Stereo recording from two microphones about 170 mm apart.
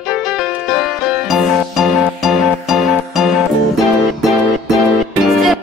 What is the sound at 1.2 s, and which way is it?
Music, centre (ahead or behind).